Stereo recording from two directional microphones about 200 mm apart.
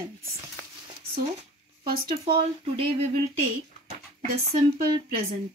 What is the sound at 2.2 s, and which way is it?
Speech, 25° right (ahead or behind).